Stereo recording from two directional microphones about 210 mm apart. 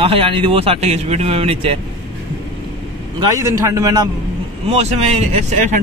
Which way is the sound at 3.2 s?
15° right (ahead or behind).